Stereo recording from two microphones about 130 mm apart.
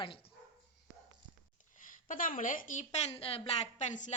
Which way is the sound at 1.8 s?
90° left.